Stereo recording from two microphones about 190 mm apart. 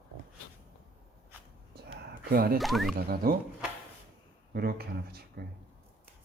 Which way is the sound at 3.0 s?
50° right (ahead or behind).